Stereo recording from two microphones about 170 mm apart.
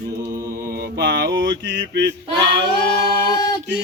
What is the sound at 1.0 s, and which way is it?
Mantra, 75° right (ahead or behind).